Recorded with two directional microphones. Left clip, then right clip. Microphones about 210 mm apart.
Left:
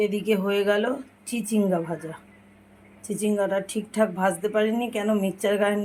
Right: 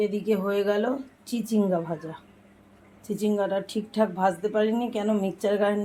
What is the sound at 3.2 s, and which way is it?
Speech, 5° left (ahead or behind).